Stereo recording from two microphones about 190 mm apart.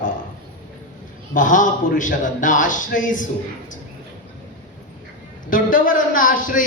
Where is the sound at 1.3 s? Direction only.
45° left (ahead or behind).